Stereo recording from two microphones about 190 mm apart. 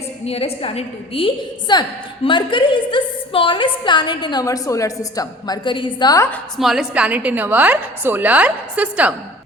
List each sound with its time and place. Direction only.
0.3 s a woman's voice: 30° left (ahead or behind)
6.3 s a woman's voice: centre (ahead or behind)